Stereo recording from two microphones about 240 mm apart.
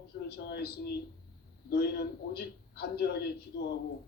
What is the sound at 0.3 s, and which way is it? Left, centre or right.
A man's voice, left.